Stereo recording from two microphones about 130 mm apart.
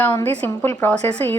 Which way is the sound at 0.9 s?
55° right (ahead or behind).